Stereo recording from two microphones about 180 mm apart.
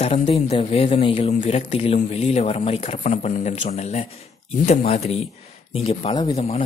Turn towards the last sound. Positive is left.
turn(degrees=20)  # may be behind; listen again after turning